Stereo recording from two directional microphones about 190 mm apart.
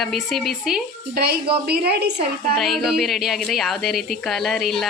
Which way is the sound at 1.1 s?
55° right (ahead or behind).